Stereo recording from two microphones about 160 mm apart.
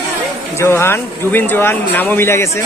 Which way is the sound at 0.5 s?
15° left (ahead or behind).